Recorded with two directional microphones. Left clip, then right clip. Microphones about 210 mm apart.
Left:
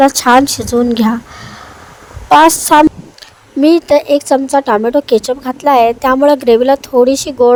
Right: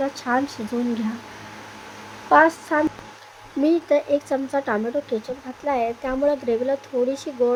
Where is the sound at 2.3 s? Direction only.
55° left (ahead or behind).